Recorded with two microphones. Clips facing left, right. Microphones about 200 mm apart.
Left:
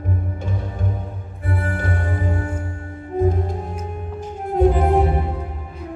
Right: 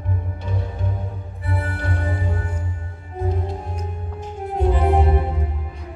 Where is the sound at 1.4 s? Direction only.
50° left (ahead or behind).